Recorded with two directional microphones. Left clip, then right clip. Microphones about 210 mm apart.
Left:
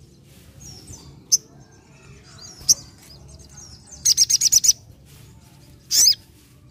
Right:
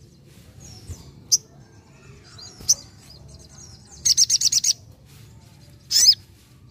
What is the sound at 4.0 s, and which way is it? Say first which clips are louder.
Bird: left 1 dB; 10° left (ahead or behind).